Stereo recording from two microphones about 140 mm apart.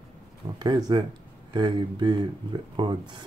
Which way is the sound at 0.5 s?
30° right (ahead or behind).